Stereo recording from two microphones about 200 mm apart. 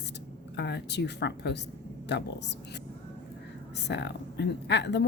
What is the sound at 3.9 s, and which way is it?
A woman's voice, 60° left (ahead or behind).